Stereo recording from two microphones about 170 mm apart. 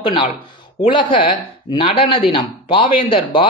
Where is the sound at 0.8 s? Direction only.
30° left (ahead or behind).